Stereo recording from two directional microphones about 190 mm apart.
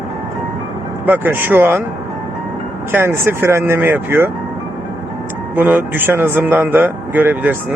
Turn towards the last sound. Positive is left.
turn(degrees=-10)  # may be behind; listen again after turning